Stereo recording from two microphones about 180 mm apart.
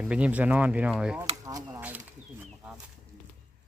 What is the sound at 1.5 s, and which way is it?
Speech, 20° right (ahead or behind).